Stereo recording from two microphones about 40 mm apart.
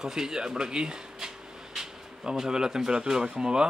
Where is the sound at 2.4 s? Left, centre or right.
Centre.